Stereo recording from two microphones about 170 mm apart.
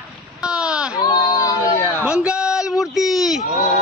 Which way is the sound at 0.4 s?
5° right (ahead or behind).